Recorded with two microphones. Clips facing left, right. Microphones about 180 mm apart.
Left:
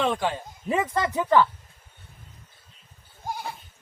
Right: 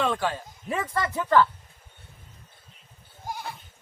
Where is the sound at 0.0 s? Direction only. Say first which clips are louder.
Left 1 dB; 15° left (ahead or behind).